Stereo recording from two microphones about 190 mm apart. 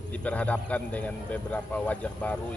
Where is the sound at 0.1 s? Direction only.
5° left (ahead or behind).